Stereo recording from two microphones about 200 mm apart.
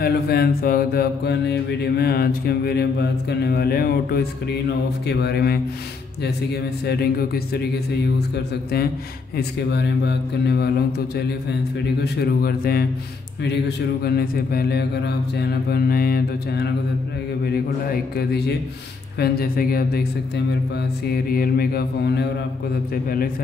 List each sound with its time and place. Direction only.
0.0 s mantra: 50° left (ahead or behind)
6.9 s mantra: 50° left (ahead or behind)
9.4 s speech: 55° left (ahead or behind)
12.0 s mantra: 55° left (ahead or behind)
17.8 s mantra: 50° left (ahead or behind)
21.1 s mantra: 50° left (ahead or behind)